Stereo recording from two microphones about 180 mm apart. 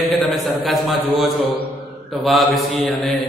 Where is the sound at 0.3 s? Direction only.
Centre (ahead or behind).